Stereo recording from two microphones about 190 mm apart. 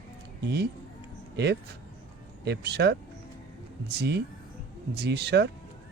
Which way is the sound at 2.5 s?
60° right (ahead or behind).